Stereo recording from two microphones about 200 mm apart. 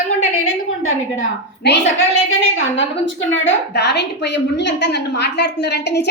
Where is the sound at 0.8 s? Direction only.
65° left (ahead or behind).